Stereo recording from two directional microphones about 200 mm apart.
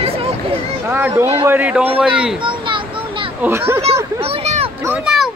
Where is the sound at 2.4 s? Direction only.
25° right (ahead or behind).